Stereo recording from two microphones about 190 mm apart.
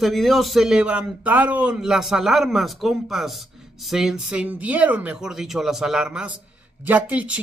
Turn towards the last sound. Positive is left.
turn(degrees=-5)  # may be behind; listen again after turning